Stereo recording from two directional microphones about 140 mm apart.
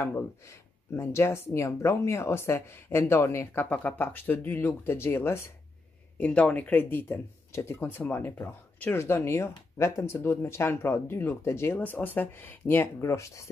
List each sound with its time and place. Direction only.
0.0 s speech: 15° left (ahead or behind)